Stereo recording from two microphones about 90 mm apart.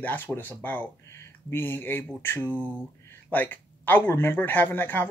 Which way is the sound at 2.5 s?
15° right (ahead or behind).